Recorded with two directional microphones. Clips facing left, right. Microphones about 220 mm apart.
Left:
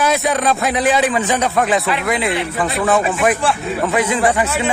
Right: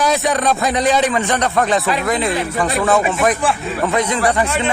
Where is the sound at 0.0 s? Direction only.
Centre (ahead or behind).